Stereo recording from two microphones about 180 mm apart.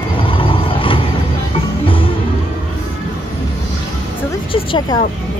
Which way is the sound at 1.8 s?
30° left (ahead or behind).